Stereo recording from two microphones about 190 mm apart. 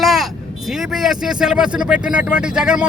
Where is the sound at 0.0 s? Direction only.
Centre (ahead or behind).